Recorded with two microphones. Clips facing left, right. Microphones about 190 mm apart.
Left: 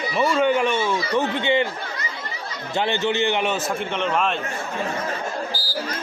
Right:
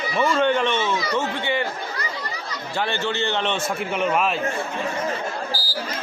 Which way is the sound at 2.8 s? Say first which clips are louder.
Left 3 dB; 20° left (ahead or behind).